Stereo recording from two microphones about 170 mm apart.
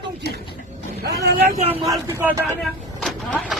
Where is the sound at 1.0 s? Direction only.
70° right (ahead or behind).